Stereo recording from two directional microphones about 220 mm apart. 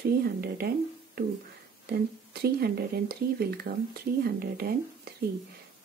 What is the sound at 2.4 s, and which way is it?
Speech, 45° right (ahead or behind).